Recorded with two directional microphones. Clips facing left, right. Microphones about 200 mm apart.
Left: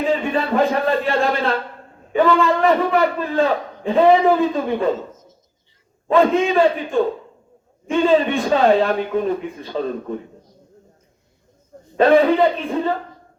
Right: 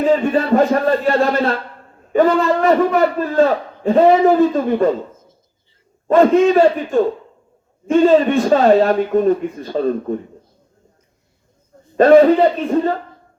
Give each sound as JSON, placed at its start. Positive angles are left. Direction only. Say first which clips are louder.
{"t": 0.0, "sound": "a man's voice", "louder": "right 5 dB", "side_deg": -45}
{"t": 6.1, "sound": "a man's voice", "louder": "right 4 dB", "side_deg": -45}
{"t": 11.9, "sound": "a man's voice", "louder": "right 4 dB", "side_deg": -45}